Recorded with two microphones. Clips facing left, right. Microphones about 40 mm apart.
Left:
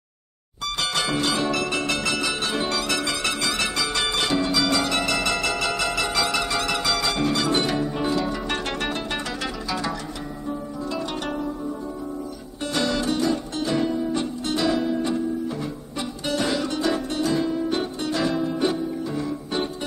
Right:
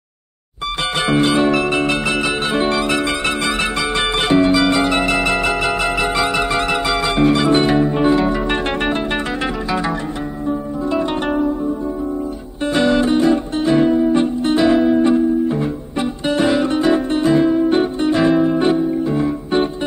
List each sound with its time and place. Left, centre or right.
0.9 s music: right
10.9 s zither: right
12.7 s music: right